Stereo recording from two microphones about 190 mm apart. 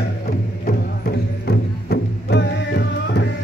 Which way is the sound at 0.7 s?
55° left (ahead or behind).